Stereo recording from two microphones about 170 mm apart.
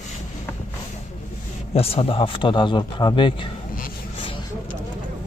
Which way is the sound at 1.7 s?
35° left (ahead or behind).